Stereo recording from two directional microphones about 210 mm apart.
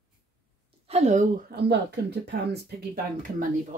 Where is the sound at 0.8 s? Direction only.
30° right (ahead or behind).